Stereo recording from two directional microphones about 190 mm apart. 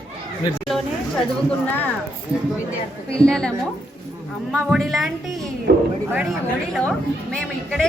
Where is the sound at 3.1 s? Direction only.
5° left (ahead or behind).